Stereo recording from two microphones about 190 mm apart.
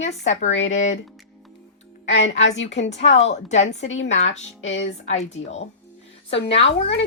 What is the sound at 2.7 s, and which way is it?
Speech, 75° left (ahead or behind).